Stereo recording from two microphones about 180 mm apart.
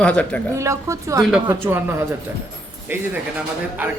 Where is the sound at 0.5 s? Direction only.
15° right (ahead or behind).